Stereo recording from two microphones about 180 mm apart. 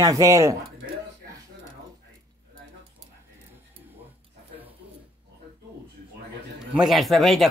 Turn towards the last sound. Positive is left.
turn(degrees=0)  # may be behind; listen again after turning